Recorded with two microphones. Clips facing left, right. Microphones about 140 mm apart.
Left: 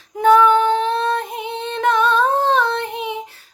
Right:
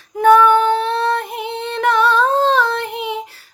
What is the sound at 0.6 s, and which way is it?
Humming, 15° left (ahead or behind).